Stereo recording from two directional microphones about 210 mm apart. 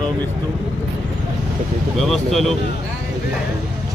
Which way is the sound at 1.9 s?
Centre (ahead or behind).